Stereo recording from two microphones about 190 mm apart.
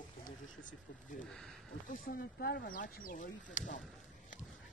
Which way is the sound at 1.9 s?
45° left (ahead or behind).